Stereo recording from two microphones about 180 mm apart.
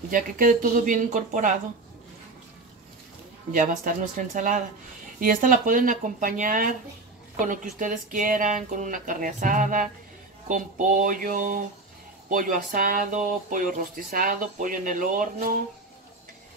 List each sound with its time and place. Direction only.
0.1 s speech: 50° right (ahead or behind)
3.5 s speech: 45° right (ahead or behind)